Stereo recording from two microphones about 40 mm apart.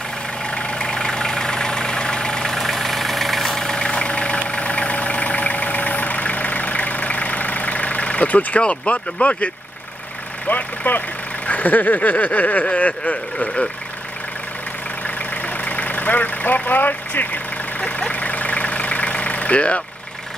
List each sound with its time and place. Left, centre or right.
0.5 s vehicle: left
2.5 s vehicle: centre
3.7 s vehicle: left
8.5 s speech: left
10.5 s speech: left
11.4 s a sound: left
12.4 s speech: left
15.0 s vehicle: left